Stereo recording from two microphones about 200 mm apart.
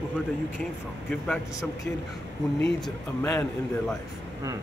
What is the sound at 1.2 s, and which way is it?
Speech, centre (ahead or behind).